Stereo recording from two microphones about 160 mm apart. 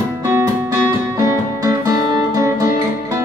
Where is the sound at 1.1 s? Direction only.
20° right (ahead or behind).